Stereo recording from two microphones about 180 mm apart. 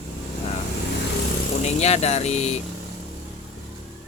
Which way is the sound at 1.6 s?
35° left (ahead or behind).